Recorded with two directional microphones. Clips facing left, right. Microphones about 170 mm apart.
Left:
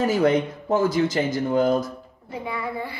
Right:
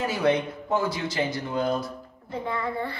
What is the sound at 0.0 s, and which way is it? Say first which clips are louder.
Speech: left 4 dB; 45° left (ahead or behind).